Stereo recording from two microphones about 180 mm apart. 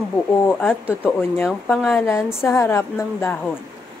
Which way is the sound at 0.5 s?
10° left (ahead or behind).